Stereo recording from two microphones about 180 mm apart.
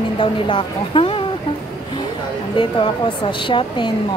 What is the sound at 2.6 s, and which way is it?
Speech, 25° left (ahead or behind).